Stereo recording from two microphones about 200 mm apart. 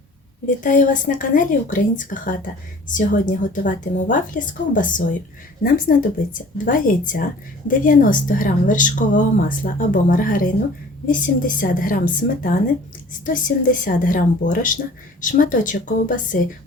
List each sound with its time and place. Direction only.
0.4 s a woman's voice: 40° left (ahead or behind)